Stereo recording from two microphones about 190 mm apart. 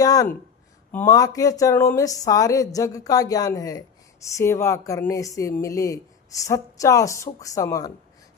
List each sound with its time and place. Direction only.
0.0 s speech: 20° left (ahead or behind)